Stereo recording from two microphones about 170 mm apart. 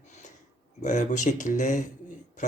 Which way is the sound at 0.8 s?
45° left (ahead or behind).